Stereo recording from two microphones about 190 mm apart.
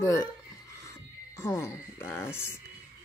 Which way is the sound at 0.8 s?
15° left (ahead or behind).